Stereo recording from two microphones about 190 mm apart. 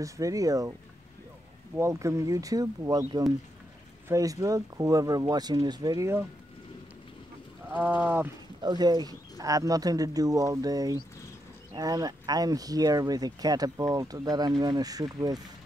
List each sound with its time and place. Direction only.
0.0 s speech: 15° right (ahead or behind)
1.8 s speech: 15° right (ahead or behind)
7.6 s speech: 10° right (ahead or behind)
8.5 s speech: 20° right (ahead or behind)